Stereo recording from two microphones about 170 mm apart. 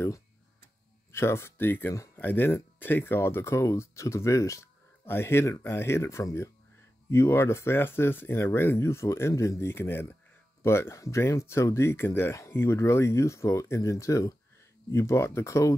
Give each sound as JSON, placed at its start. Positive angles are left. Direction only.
{"t": 1.1, "sound": "speech", "side_deg": 15}